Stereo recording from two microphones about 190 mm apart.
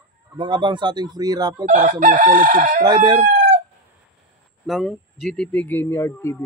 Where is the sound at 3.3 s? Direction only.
45° right (ahead or behind).